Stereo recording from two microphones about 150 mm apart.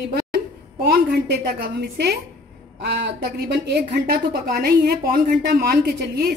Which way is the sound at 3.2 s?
90° right.